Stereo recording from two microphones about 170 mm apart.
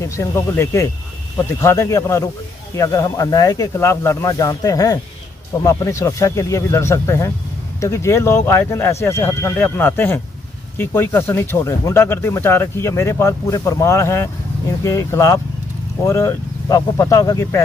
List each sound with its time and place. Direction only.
0.0 s speech: 15° left (ahead or behind)